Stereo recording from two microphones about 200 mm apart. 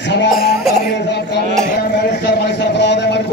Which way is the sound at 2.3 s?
55° left (ahead or behind).